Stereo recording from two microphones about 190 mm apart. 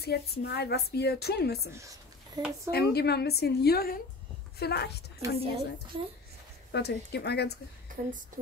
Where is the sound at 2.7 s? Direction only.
60° left (ahead or behind).